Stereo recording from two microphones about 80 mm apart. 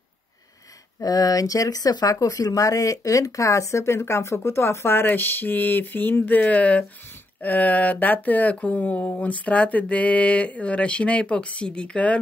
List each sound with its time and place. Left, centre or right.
1.0 s speech: left; by 12.2 s centre